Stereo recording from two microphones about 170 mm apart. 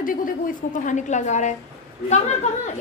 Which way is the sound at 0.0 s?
55° left (ahead or behind).